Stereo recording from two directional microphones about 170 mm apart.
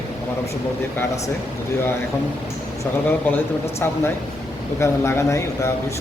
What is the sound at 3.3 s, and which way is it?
Speech, 15° left (ahead or behind).